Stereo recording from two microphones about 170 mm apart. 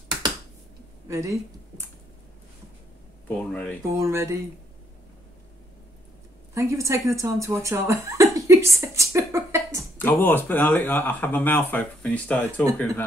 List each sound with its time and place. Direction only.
1.0 s speech: 15° right (ahead or behind)
3.3 s speech: 10° left (ahead or behind)
3.9 s speech: 15° right (ahead or behind)
6.5 s speech: 15° right (ahead or behind)
9.9 s speech: 10° left (ahead or behind)